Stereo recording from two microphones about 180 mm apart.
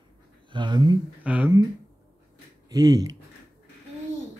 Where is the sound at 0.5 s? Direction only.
25° right (ahead or behind).